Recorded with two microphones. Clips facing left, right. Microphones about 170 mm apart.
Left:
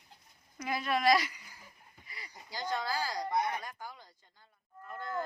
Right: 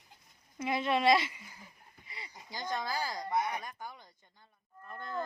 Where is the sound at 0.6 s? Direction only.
25° right (ahead or behind).